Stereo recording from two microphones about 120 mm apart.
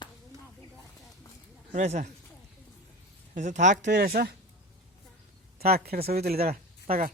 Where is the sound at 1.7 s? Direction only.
75° right (ahead or behind).